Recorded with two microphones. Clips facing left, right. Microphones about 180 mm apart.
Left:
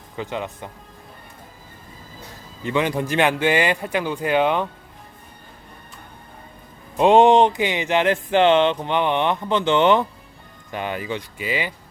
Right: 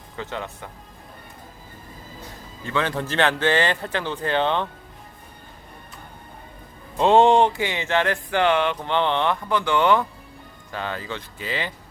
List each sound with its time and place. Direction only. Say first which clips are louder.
0.2 s a man's voice: left 3 dB; 15° left (ahead or behind)
2.6 s a man's voice: left 4 dB; 15° left (ahead or behind)
6.9 s a sound: left 2 dB; 15° left (ahead or behind)
10.7 s a man's voice: left 4 dB; 15° left (ahead or behind)